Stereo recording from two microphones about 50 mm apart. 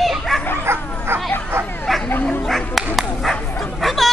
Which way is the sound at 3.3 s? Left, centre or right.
Centre.